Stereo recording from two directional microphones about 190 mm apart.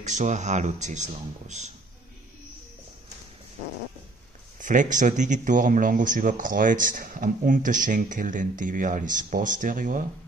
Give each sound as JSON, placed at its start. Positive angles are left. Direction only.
{"t": 0.0, "sound": "speech", "side_deg": -40}
{"t": 4.6, "sound": "speech", "side_deg": -40}